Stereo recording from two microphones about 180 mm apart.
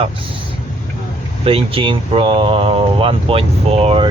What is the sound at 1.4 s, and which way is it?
Speech, 30° right (ahead or behind).